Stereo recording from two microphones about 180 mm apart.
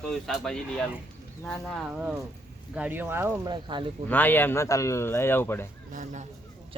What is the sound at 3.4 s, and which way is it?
Speech, 25° right (ahead or behind).